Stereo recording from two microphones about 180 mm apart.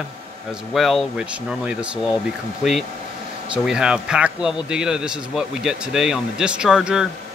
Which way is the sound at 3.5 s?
5° right (ahead or behind).